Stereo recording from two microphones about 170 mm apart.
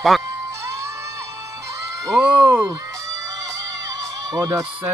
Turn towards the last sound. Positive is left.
turn(degrees=-20)  # may be behind; listen again after turning